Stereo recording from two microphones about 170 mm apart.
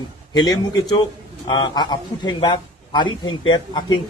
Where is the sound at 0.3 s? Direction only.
25° left (ahead or behind).